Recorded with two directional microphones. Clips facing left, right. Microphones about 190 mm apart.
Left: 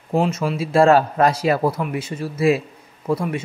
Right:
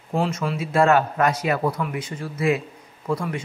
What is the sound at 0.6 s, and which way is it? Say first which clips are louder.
A man's voice: left 4 dB; 30° left (ahead or behind).